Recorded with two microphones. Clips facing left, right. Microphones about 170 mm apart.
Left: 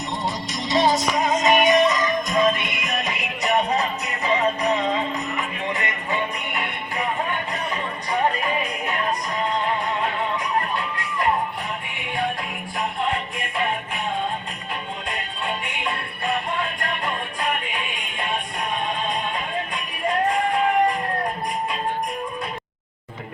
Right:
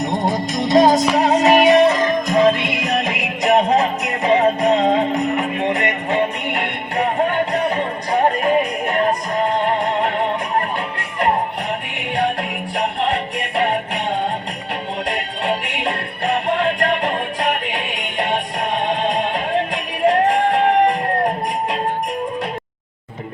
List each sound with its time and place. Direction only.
0.0 s music: 50° right (ahead or behind)
1.1 s music: 70° right (ahead or behind)
11.9 s music: 75° right (ahead or behind)
15.1 s music: 70° right (ahead or behind); by 20.6 s 90° right